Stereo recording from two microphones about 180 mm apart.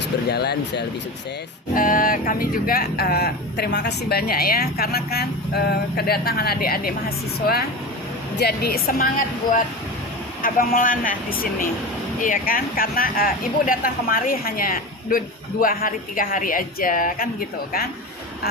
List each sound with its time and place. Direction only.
0.3 s speech: 65° left (ahead or behind)
1.7 s speech: 50° left (ahead or behind)
10.4 s speech: 50° left (ahead or behind)